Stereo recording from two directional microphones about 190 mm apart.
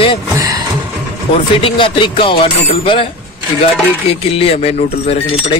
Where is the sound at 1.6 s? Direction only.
25° left (ahead or behind).